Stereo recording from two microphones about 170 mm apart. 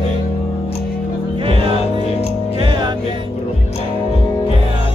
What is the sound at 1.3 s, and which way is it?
Music, 30° right (ahead or behind).